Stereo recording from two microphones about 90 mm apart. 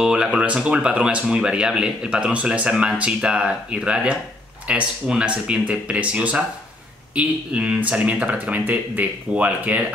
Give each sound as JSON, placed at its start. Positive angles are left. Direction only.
{"t": 0.0, "sound": "speech", "side_deg": -10}